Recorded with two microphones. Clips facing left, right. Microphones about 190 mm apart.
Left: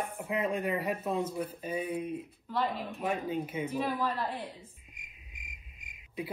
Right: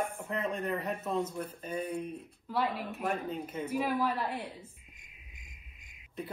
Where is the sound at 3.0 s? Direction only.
5° left (ahead or behind).